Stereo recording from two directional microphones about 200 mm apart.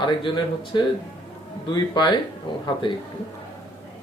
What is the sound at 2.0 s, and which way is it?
Speech, 20° left (ahead or behind).